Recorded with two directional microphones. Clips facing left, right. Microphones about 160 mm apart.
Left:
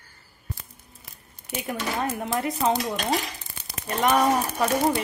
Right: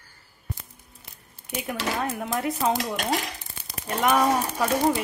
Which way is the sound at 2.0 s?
5° left (ahead or behind).